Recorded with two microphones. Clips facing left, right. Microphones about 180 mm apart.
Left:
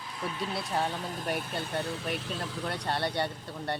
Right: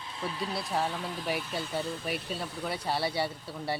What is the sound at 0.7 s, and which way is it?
Speech, centre (ahead or behind).